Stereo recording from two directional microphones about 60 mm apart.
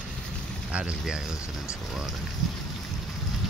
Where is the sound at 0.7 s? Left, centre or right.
Centre.